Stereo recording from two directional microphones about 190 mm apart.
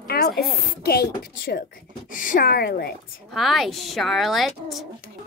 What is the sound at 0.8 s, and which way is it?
Speech, 55° left (ahead or behind).